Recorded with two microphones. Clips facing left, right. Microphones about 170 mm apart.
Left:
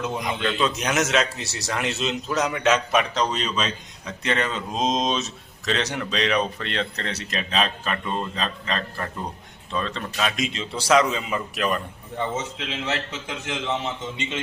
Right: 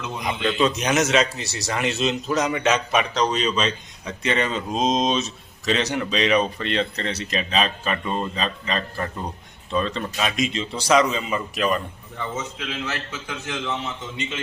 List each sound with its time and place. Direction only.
0.4 s speech: centre (ahead or behind)
12.1 s a man's voice: 30° left (ahead or behind)